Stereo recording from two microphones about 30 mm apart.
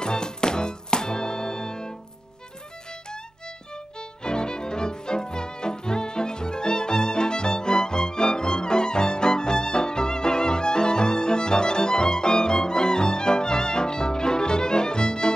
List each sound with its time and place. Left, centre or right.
0.0 s music: left
2.9 s violin: left